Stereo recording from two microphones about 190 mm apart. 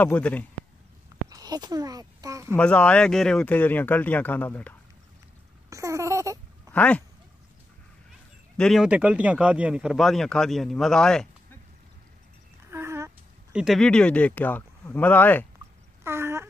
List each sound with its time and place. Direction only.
0.0 s speech: 5° left (ahead or behind)
1.3 s a child's voice: 20° right (ahead or behind)
2.5 s speech: 5° left (ahead or behind)
5.7 s a sound: 15° right (ahead or behind)
6.7 s speech: 5° left (ahead or behind)
8.5 s speech: centre (ahead or behind)
12.7 s speech: 15° right (ahead or behind); by 15.4 s 10° left (ahead or behind)
16.0 s a sound: 15° right (ahead or behind)